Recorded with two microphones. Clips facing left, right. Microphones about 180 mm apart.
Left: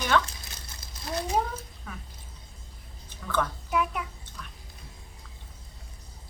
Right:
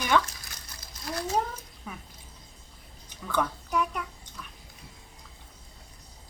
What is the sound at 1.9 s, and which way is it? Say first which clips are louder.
Speech: right 2 dB; 10° right (ahead or behind).